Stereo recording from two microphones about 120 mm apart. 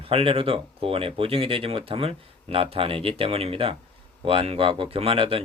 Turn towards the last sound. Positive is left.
turn(degrees=-50)  # may be behind; listen again after turning